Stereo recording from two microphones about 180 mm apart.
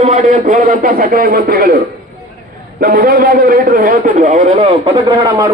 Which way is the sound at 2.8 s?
60° right (ahead or behind).